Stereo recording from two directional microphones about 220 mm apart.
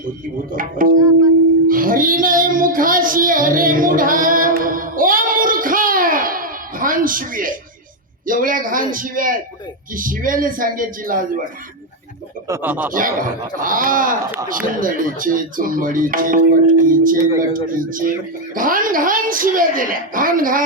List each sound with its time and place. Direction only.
0.5 s speech: 40° right (ahead or behind)
1.6 s child singing: 40° right (ahead or behind)
8.3 s speech: 40° right (ahead or behind)
12.5 s speech: 10° right (ahead or behind)
12.9 s speech: 40° right (ahead or behind)